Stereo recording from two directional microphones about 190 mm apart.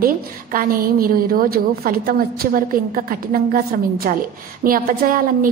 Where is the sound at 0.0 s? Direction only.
50° right (ahead or behind).